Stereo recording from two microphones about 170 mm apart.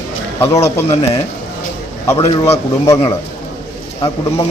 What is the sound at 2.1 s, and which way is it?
Speech, 35° left (ahead or behind).